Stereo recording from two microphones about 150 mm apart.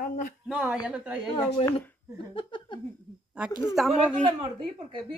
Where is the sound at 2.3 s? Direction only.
35° left (ahead or behind).